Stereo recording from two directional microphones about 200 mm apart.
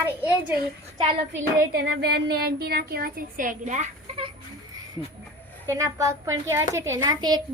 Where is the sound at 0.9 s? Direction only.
25° right (ahead or behind).